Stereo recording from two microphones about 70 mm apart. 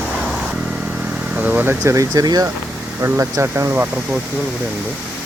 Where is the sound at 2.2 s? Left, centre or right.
Right.